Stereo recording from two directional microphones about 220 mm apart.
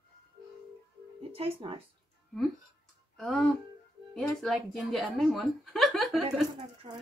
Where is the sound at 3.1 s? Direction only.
Centre (ahead or behind).